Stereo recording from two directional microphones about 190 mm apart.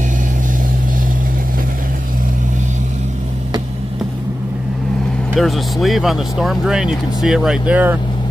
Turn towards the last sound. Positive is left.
turn(degrees=-5)  # may be behind; listen again after turning